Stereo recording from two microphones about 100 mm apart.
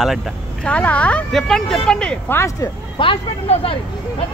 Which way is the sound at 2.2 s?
25° left (ahead or behind).